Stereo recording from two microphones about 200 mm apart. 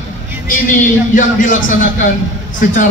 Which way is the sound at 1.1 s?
40° left (ahead or behind).